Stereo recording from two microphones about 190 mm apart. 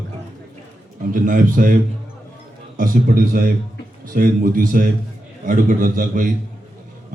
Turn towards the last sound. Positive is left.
turn(degrees=-45)  # may be behind; listen again after turning